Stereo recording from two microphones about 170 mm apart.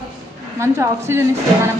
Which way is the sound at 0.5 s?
15° right (ahead or behind).